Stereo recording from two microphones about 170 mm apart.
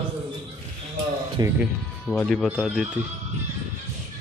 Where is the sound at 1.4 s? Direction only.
20° right (ahead or behind).